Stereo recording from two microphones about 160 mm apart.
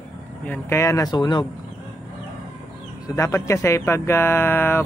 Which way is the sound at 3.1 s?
20° left (ahead or behind).